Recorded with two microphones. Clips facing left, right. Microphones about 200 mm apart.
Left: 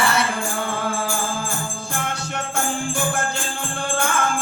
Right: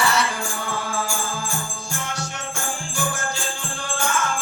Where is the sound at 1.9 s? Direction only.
60° left (ahead or behind).